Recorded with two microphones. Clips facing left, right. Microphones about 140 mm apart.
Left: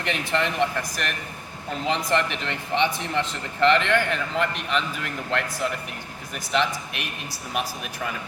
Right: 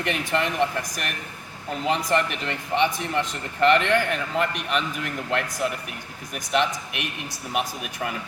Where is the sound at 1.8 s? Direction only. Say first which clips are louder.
Right 1 dB; 10° right (ahead or behind).